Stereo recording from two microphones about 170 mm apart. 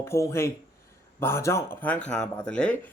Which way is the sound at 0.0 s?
15° left (ahead or behind).